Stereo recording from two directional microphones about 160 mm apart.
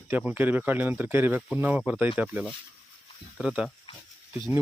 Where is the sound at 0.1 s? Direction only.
10° right (ahead or behind).